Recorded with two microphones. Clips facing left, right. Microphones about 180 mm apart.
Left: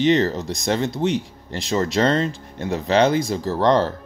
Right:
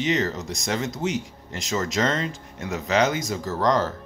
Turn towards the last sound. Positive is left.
turn(degrees=30)  # may be behind; listen again after turning